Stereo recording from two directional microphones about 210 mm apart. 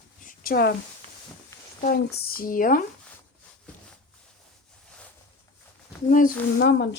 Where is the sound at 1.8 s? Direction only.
45° left (ahead or behind).